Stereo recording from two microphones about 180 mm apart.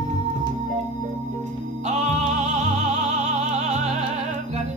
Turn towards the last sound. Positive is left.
turn(degrees=-40)  # may be behind; listen again after turning